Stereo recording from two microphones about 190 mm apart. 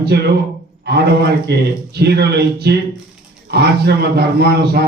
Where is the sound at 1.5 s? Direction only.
60° right (ahead or behind).